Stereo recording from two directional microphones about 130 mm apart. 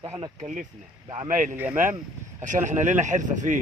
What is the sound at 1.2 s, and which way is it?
Speech, 90° right.